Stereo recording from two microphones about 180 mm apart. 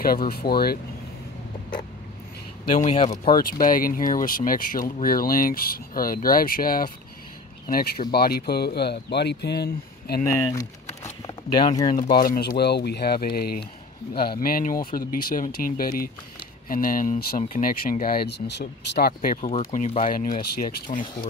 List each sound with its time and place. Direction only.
0.0 s speech: 55° left (ahead or behind)
2.8 s speech: 35° left (ahead or behind)
3.6 s speech: 50° left (ahead or behind)
10.2 s speech: 20° left (ahead or behind)
12.1 s speech: 60° left (ahead or behind)
19.3 s speech: 40° left (ahead or behind)